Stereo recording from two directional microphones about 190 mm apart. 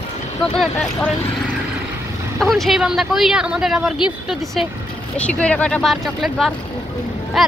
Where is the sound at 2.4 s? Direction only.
Centre (ahead or behind).